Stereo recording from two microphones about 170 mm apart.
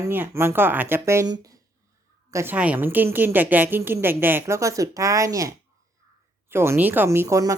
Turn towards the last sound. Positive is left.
turn(degrees=-20)  # may be behind; listen again after turning